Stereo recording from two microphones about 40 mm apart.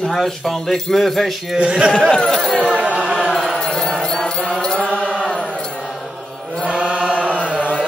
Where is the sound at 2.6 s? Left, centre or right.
Right.